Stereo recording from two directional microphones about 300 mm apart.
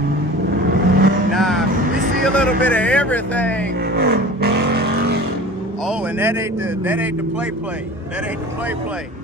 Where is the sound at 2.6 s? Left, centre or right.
Centre.